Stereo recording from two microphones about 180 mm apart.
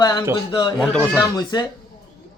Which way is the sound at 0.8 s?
10° left (ahead or behind).